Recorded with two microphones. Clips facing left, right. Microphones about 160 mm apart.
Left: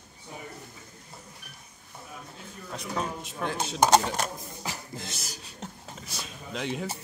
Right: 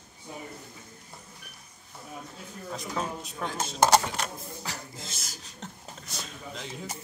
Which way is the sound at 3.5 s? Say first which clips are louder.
Left 1 dB; 15° left (ahead or behind).